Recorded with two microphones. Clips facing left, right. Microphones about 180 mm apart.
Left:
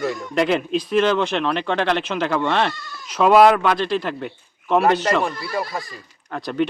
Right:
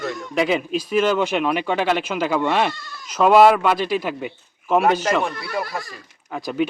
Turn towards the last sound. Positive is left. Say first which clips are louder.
# even
turn(degrees=-5)  # may be behind; listen again after turning